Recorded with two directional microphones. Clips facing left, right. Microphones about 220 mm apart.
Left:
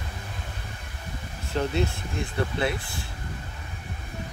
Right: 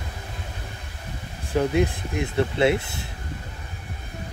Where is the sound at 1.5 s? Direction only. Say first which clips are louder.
Right 5 dB; 15° right (ahead or behind).